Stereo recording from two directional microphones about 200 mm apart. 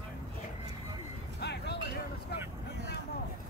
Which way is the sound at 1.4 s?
55° left (ahead or behind).